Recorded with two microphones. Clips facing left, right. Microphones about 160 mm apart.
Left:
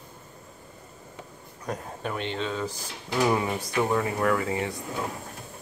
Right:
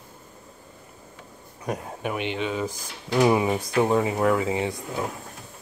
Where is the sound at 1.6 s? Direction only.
15° right (ahead or behind).